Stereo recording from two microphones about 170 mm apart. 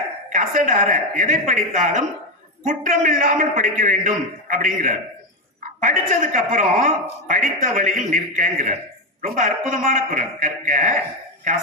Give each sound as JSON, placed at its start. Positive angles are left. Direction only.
{"t": 0.3, "sound": "a man's voice", "side_deg": -50}